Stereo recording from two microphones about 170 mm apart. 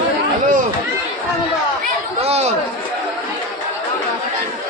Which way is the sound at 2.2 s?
40° right (ahead or behind).